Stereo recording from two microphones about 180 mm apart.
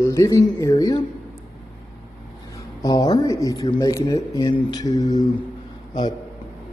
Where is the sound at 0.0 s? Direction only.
15° left (ahead or behind).